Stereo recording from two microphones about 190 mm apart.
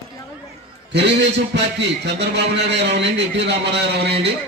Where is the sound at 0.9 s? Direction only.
65° right (ahead or behind).